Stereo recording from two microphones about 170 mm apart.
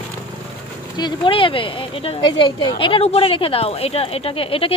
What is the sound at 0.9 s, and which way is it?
Speech, 25° left (ahead or behind).